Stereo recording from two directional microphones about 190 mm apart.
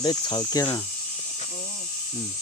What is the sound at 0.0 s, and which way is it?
Speech, 20° left (ahead or behind).